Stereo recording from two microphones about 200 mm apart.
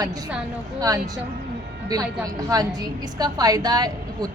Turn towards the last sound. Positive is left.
turn(degrees=-20)  # may be behind; listen again after turning